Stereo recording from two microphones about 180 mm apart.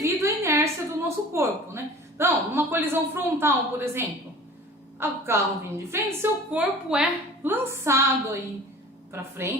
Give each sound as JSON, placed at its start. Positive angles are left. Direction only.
{"t": 0.0, "sound": "a woman's voice", "side_deg": -15}